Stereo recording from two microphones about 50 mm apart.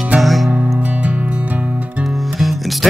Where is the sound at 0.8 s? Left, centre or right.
Right.